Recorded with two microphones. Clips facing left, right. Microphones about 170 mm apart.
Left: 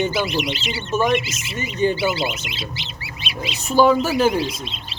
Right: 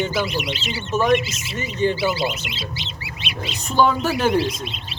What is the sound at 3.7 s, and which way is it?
Speech, 5° left (ahead or behind).